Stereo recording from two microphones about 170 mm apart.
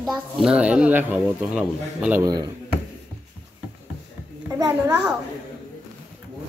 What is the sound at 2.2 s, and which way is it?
Speech, 20° right (ahead or behind).